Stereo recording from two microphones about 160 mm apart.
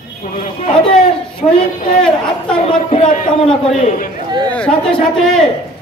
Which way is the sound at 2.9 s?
55° left (ahead or behind).